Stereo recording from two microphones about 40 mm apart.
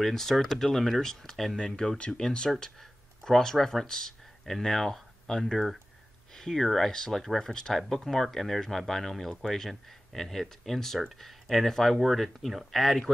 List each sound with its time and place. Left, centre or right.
0.0 s speech: centre
2.0 s speech: left
2.6 s speech: centre